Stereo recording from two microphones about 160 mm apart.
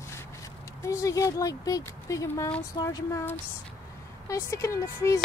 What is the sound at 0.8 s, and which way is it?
Speech, 20° left (ahead or behind).